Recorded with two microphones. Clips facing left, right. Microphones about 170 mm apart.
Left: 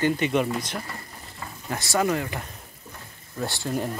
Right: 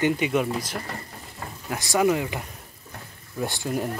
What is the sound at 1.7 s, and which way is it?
Speech, 15° right (ahead or behind).